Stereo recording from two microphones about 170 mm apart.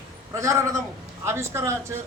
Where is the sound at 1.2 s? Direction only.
15° right (ahead or behind).